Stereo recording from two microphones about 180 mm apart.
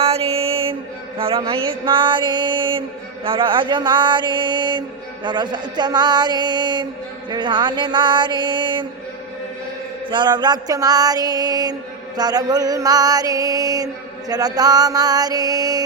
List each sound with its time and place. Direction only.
0.0 s mantra: 30° right (ahead or behind)
10.1 s mantra: 25° right (ahead or behind)